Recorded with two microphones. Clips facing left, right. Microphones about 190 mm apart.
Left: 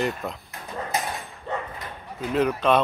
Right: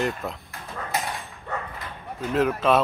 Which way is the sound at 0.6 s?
20° left (ahead or behind).